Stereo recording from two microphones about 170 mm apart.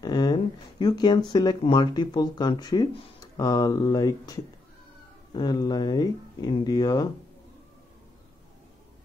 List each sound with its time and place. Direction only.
0.0 s speech: 25° left (ahead or behind)